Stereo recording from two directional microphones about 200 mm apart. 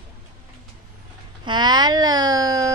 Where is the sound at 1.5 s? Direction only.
20° right (ahead or behind).